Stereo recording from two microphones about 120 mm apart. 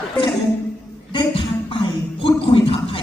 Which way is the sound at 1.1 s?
45° left (ahead or behind).